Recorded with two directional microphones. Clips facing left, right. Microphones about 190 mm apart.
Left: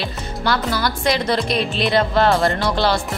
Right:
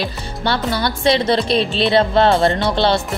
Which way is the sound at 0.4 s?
25° right (ahead or behind).